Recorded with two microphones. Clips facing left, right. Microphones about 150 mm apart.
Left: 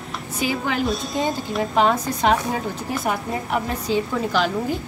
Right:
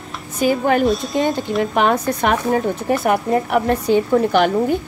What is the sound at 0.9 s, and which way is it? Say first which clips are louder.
Speech: right 5 dB; centre (ahead or behind).